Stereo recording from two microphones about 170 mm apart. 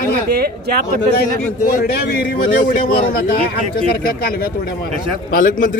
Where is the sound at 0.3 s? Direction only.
65° right (ahead or behind).